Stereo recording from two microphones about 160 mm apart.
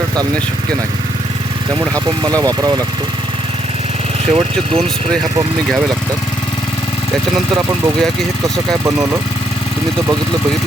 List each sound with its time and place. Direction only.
2.0 s speech: 25° right (ahead or behind)
4.4 s speech: 40° right (ahead or behind)